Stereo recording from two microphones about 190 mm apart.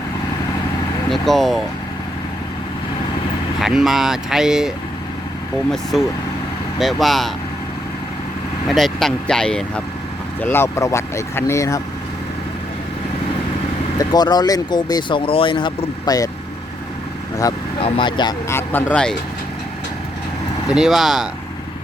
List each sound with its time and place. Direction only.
1.1 s speech: centre (ahead or behind)
3.6 s speech: centre (ahead or behind)
5.7 s speech: centre (ahead or behind)
8.7 s speech: centre (ahead or behind)
14.0 s speech: 20° left (ahead or behind)
17.8 s speech: 25° left (ahead or behind); by 19.1 s 5° left (ahead or behind)
20.7 s speech: centre (ahead or behind)